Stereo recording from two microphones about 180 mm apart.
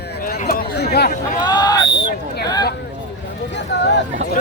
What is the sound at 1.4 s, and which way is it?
Speech, 25° left (ahead or behind).